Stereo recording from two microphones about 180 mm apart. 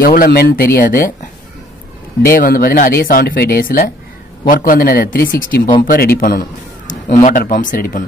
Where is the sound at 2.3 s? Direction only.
55° left (ahead or behind).